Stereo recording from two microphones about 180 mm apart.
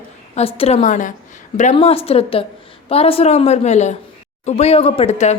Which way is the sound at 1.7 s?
35° left (ahead or behind).